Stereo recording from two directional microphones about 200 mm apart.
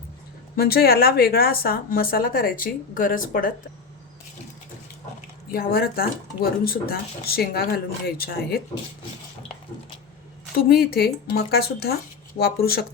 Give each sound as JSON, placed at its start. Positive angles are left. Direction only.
{"t": 0.5, "sound": "speech", "side_deg": 50}
{"t": 5.5, "sound": "speech", "side_deg": 50}
{"t": 10.6, "sound": "speech", "side_deg": 50}